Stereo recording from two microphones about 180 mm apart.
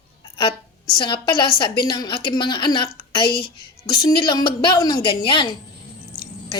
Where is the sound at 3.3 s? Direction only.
60° left (ahead or behind).